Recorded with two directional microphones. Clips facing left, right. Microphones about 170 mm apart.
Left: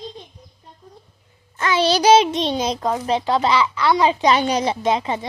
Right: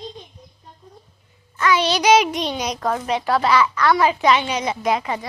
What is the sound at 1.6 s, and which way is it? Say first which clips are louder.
A child's voice: left 1 dB; 25° left (ahead or behind).